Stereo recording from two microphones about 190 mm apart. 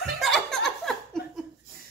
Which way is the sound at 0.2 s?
Centre (ahead or behind).